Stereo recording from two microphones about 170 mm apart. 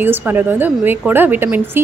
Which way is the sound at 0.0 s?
10° right (ahead or behind).